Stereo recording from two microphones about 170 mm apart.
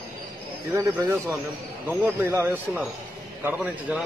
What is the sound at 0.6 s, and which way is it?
A man's voice, 15° right (ahead or behind).